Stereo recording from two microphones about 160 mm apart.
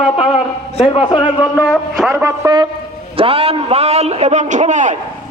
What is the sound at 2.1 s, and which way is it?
Speech, 20° right (ahead or behind).